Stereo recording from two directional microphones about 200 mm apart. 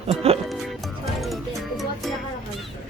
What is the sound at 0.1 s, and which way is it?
Music, 30° right (ahead or behind).